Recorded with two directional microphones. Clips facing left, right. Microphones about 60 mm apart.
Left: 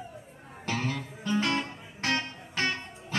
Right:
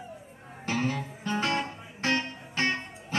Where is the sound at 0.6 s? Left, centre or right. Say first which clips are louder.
Right 2 dB; right.